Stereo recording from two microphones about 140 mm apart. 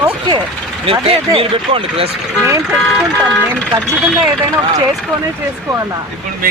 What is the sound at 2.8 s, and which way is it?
Speech, 5° left (ahead or behind).